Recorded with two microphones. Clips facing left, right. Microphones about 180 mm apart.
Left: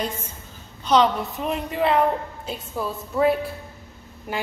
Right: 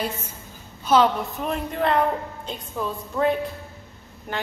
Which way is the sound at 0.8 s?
5° right (ahead or behind).